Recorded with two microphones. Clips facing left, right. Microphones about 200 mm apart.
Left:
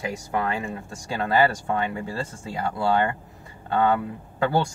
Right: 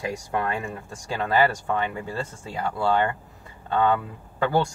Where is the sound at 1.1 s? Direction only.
10° left (ahead or behind).